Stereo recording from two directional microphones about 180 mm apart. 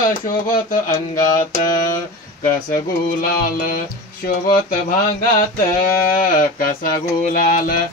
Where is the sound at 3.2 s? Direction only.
55° left (ahead or behind).